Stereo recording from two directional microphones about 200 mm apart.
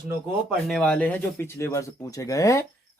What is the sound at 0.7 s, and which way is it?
Speech, 5° left (ahead or behind).